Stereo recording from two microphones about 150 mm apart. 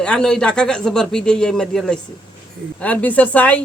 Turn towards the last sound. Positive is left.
turn(degrees=10)  # may be behind; listen again after turning